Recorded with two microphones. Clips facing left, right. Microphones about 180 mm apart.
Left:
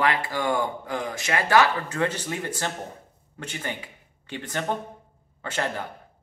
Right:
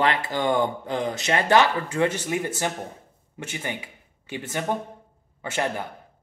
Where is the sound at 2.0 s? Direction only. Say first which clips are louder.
Right 4 dB; 10° right (ahead or behind).